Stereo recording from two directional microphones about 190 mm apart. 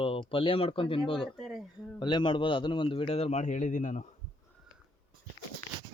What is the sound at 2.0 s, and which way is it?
Speech, 25° left (ahead or behind).